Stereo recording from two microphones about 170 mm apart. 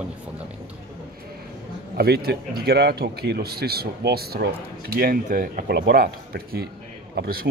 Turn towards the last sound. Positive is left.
turn(degrees=-60)  # may be behind; listen again after turning